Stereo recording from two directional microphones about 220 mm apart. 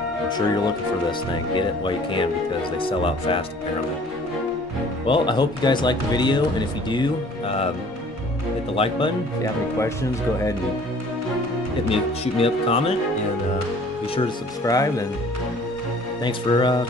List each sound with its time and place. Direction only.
0.3 s speech: 20° left (ahead or behind)
5.0 s speech: 20° left (ahead or behind)
8.7 s speech: 25° left (ahead or behind)
9.4 s speech: 15° left (ahead or behind)
11.9 s speech: 25° left (ahead or behind)
14.1 s speech: 20° left (ahead or behind)
16.3 s speech: 20° left (ahead or behind)